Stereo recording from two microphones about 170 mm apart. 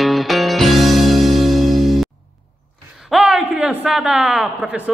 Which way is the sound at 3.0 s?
5° right (ahead or behind).